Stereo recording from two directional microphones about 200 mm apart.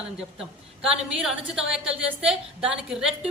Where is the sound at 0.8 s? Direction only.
5° right (ahead or behind).